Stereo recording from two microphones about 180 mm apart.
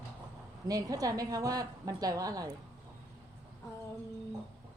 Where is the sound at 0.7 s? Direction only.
20° right (ahead or behind).